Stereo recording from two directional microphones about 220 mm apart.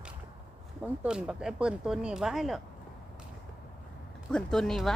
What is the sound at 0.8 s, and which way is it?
Speech, 5° right (ahead or behind).